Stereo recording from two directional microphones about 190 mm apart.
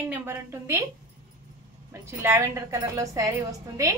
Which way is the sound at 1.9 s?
15° right (ahead or behind).